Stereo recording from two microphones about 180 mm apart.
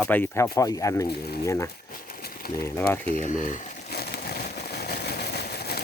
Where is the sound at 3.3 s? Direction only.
45° left (ahead or behind).